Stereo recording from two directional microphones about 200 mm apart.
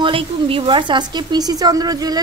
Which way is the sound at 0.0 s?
25° right (ahead or behind).